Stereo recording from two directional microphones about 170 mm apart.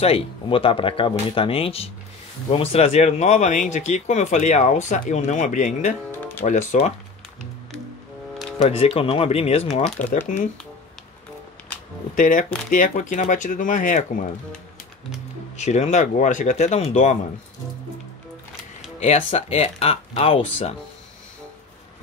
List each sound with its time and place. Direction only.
0.0 s speech: 35° left (ahead or behind)
8.5 s speech: 35° left (ahead or behind)
10.2 s speech: 50° left (ahead or behind)
12.2 s speech: 50° left (ahead or behind)
18.9 s speech: 40° left (ahead or behind)